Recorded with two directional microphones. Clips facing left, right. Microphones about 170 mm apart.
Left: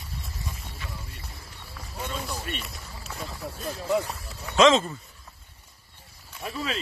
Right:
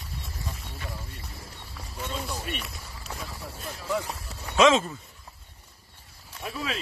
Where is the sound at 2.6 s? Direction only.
Centre (ahead or behind).